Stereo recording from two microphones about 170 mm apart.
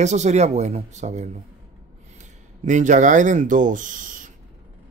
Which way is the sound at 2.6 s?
45° right (ahead or behind).